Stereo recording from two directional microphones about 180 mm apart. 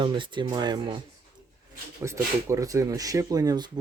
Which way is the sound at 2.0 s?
15° right (ahead or behind).